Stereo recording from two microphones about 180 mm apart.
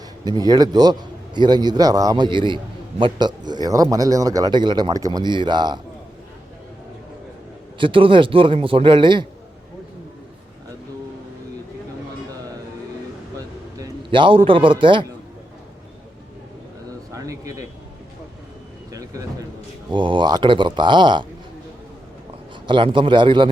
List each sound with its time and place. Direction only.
0.3 s a man's voice: 20° right (ahead or behind)
7.8 s a man's voice: 30° right (ahead or behind)
13.7 s a man's voice: 25° right (ahead or behind)
17.1 s speech: 20° right (ahead or behind)
18.9 s a sound: 20° right (ahead or behind)
19.9 s a man's voice: 25° right (ahead or behind)
22.6 s a man's voice: 25° right (ahead or behind)